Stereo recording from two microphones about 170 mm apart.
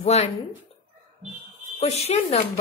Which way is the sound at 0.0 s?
40° left (ahead or behind).